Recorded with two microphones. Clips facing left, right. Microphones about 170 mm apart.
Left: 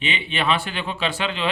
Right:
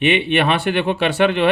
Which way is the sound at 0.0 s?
65° right (ahead or behind).